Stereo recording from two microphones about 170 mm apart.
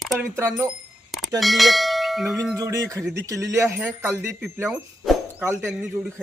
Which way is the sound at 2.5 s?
20° right (ahead or behind).